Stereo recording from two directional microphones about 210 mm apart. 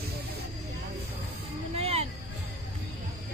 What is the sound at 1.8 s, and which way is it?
Music, 30° right (ahead or behind).